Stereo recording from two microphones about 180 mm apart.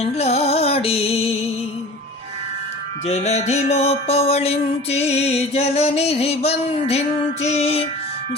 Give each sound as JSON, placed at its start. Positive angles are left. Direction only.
{"t": 0.0, "sound": "music", "side_deg": 35}
{"t": 3.1, "sound": "music", "side_deg": 40}